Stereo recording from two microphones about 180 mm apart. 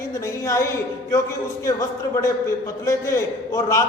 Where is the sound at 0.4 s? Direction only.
15° left (ahead or behind).